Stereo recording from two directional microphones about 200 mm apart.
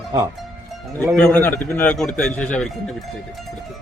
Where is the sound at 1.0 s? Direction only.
5° left (ahead or behind).